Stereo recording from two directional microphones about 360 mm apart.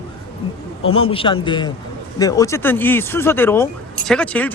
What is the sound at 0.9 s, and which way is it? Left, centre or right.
Speech, centre.